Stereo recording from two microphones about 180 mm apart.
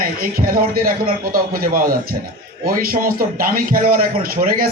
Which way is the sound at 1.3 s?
50° right (ahead or behind).